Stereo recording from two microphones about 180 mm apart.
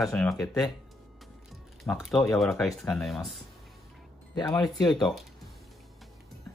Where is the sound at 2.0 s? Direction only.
Centre (ahead or behind).